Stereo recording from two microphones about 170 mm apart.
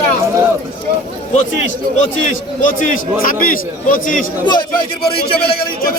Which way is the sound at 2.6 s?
50° left (ahead or behind).